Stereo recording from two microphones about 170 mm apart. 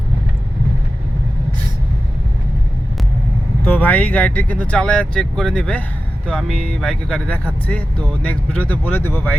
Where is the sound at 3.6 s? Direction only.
10° left (ahead or behind).